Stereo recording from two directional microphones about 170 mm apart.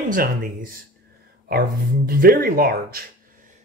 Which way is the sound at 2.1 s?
60° right (ahead or behind).